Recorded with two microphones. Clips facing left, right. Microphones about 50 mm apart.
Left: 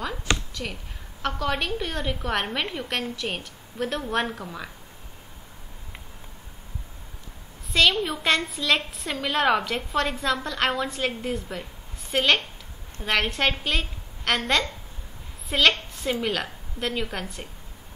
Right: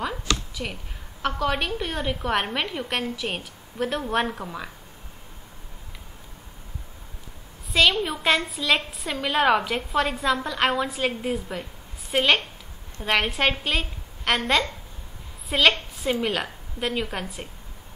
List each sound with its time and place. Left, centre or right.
0.3 s a sound: left
1.2 s a woman's voice: centre
7.7 s a woman's voice: centre